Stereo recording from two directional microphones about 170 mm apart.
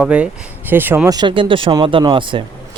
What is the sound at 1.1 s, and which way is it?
Speech, 30° right (ahead or behind).